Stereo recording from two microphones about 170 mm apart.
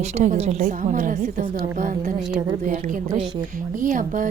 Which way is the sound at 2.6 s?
50° right (ahead or behind).